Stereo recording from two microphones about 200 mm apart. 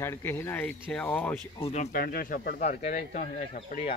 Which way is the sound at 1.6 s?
30° left (ahead or behind).